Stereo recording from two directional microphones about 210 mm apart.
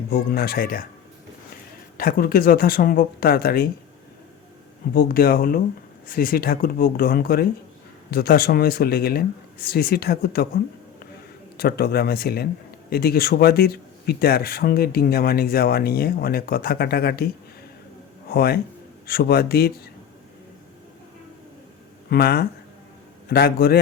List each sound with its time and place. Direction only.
0.1 s speech: 45° left (ahead or behind)
2.0 s speech: 45° left (ahead or behind)
4.9 s speech: 45° left (ahead or behind)
11.5 s speech: 50° left (ahead or behind)
18.3 s speech: 50° left (ahead or behind)
22.1 s speech: 45° left (ahead or behind)